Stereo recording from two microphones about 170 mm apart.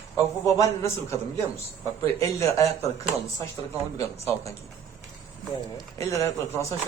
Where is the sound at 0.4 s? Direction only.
15° left (ahead or behind).